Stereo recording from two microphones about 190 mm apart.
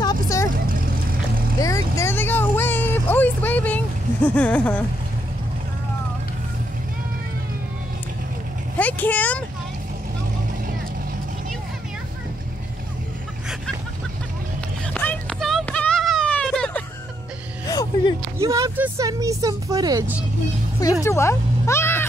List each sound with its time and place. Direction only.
0.0 s vehicle: 20° left (ahead or behind)
1.6 s vehicle: 15° left (ahead or behind)
8.7 s vehicle: 10° left (ahead or behind)
15.0 s a sound: 5° left (ahead or behind)
17.6 s a sound: 20° left (ahead or behind)
18.4 s music: 15° right (ahead or behind)
21.0 s speech: 15° left (ahead or behind)